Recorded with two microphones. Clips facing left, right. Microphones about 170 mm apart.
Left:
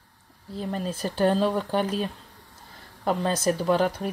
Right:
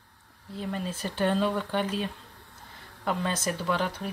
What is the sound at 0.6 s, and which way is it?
Speech, 35° left (ahead or behind).